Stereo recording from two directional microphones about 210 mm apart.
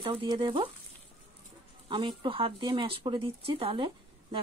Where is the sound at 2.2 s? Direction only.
25° right (ahead or behind).